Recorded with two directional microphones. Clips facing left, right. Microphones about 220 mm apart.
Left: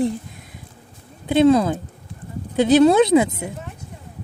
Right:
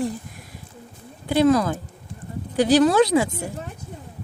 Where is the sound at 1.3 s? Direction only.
25° left (ahead or behind).